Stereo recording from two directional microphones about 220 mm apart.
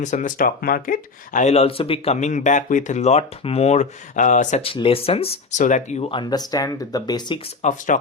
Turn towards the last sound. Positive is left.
turn(degrees=35)  # may be behind; listen again after turning